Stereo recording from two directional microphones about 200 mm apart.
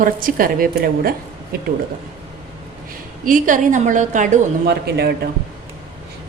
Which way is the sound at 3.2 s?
40° right (ahead or behind).